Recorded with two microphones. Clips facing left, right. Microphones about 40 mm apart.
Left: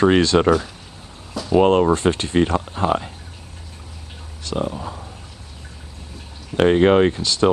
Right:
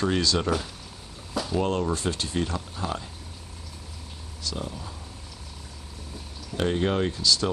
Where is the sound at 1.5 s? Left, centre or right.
Left.